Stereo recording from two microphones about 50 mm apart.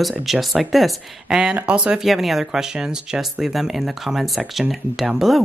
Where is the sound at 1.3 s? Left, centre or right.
Centre.